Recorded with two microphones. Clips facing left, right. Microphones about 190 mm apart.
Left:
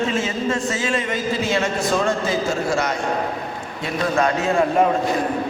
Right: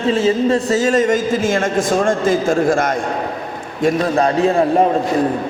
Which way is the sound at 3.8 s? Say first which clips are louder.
Right 6 dB; 35° right (ahead or behind).